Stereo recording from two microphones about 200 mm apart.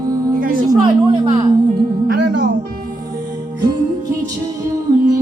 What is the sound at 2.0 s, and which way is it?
Music, 60° right (ahead or behind).